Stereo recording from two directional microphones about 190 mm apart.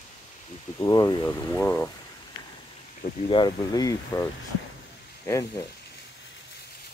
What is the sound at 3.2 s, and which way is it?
Speech, 25° left (ahead or behind).